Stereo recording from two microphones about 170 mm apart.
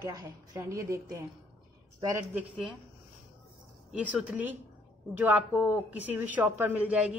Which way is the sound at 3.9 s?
5° right (ahead or behind).